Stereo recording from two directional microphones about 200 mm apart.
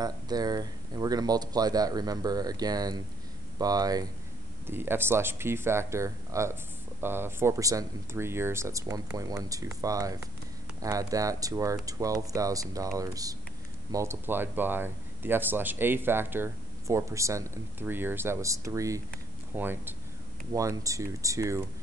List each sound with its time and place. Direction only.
0.0 s speech: 20° right (ahead or behind)